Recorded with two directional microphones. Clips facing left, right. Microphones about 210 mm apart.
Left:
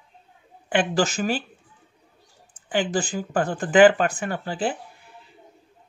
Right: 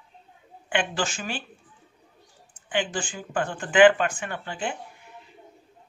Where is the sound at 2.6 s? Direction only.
40° left (ahead or behind).